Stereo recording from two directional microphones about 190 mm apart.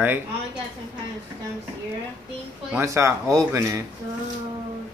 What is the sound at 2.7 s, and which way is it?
Speech, 15° right (ahead or behind).